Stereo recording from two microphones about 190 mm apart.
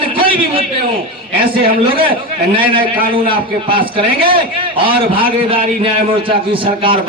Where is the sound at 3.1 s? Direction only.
25° right (ahead or behind).